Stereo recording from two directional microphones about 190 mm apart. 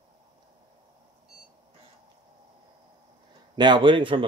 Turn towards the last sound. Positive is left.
turn(degrees=-25)  # may be behind; listen again after turning